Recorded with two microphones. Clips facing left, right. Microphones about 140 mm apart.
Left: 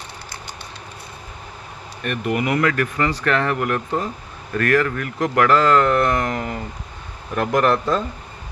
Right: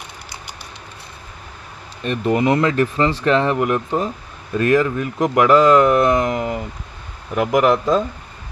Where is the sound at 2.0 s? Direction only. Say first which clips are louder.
Right 5 dB; 25° right (ahead or behind).